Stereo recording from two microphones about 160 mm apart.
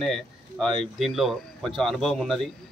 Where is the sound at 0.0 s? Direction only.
Centre (ahead or behind).